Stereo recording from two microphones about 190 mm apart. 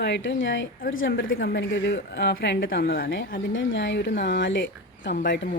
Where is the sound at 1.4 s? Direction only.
70° left (ahead or behind).